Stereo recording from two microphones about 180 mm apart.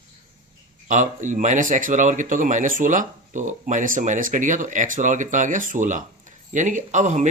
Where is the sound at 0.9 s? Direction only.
45° right (ahead or behind).